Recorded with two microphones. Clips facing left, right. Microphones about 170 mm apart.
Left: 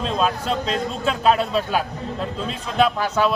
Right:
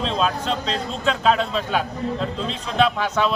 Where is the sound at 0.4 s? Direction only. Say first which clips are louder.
Left 1 dB; 45° left (ahead or behind).